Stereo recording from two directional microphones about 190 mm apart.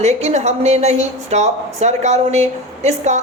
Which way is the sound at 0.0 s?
35° right (ahead or behind).